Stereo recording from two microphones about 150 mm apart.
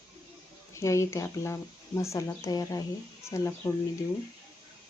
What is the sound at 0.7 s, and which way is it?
Speech, 20° left (ahead or behind).